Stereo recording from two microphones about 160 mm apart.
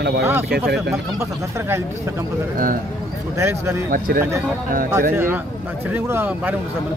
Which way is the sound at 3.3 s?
20° right (ahead or behind).